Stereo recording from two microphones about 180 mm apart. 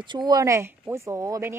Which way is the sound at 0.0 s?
25° right (ahead or behind).